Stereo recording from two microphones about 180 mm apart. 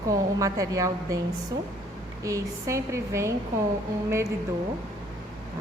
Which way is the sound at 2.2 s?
15° right (ahead or behind).